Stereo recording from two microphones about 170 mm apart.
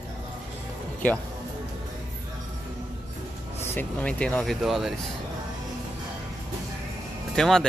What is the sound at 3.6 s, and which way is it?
Speech, 10° left (ahead or behind).